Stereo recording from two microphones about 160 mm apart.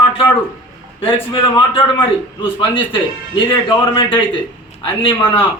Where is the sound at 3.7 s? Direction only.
30° left (ahead or behind).